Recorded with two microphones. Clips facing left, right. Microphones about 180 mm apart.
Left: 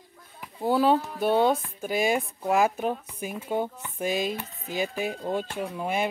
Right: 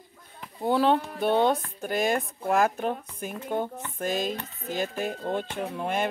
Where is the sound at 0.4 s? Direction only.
5° left (ahead or behind).